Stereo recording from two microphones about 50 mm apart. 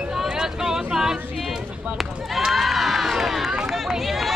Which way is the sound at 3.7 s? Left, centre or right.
Centre.